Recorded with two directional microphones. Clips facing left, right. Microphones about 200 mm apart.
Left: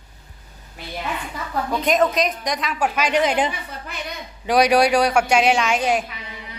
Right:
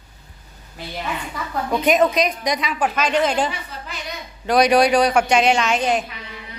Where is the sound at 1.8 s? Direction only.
Centre (ahead or behind).